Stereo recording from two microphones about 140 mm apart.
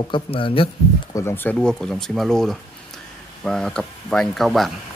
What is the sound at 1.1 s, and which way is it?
Speech, 15° left (ahead or behind).